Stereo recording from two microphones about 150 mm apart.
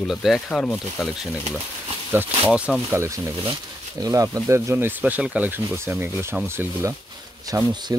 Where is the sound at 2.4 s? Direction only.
10° right (ahead or behind).